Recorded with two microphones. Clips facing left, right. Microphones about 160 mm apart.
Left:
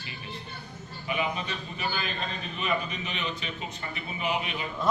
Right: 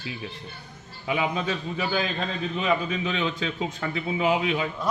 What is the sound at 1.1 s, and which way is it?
Speech, 90° right.